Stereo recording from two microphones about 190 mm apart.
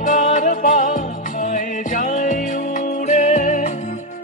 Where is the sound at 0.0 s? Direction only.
40° left (ahead or behind).